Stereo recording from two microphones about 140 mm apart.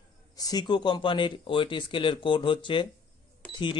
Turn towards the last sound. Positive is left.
turn(degrees=10)  # may be behind; listen again after turning